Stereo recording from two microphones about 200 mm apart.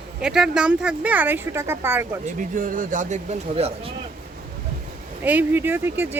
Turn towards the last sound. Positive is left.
turn(degrees=-10)  # may be behind; listen again after turning